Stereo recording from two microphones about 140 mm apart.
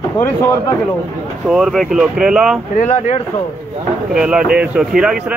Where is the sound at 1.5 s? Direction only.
Centre (ahead or behind).